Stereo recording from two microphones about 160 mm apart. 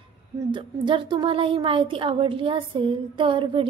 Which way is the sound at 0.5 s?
30° right (ahead or behind).